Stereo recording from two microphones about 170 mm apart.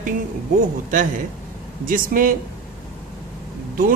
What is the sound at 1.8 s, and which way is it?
Speech, 55° right (ahead or behind).